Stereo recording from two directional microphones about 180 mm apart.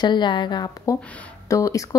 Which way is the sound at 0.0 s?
25° left (ahead or behind).